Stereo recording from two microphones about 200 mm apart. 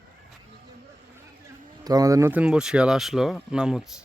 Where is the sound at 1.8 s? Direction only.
20° right (ahead or behind).